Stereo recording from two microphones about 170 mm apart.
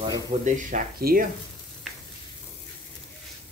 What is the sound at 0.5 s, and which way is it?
Speech, 50° right (ahead or behind).